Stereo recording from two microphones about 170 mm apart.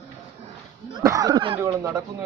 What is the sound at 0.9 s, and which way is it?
Speech, 20° right (ahead or behind).